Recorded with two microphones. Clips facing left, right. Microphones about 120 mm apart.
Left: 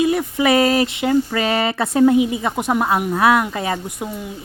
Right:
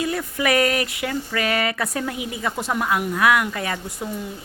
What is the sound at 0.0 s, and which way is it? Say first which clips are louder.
A woman's voice: left 6 dB; 20° left (ahead or behind).